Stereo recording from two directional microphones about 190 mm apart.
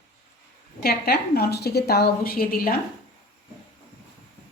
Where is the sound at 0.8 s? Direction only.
55° left (ahead or behind).